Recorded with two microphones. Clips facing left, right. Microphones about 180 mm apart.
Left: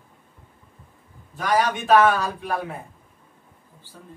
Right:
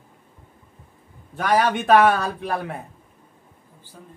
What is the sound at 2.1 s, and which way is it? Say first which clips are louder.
Speech: right 1 dB; 60° right (ahead or behind).